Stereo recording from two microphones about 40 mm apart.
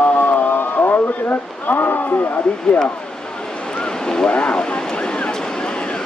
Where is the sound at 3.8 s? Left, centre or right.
Centre.